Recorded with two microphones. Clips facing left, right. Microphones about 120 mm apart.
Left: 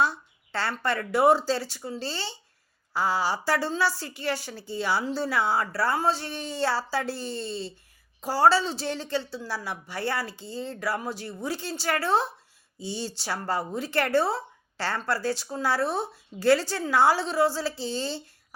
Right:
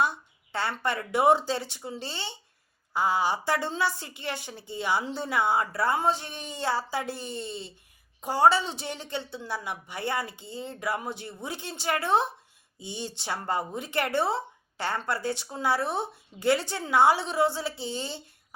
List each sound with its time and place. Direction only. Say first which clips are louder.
0.0 s a woman's voice: left 1 dB; 15° right (ahead or behind)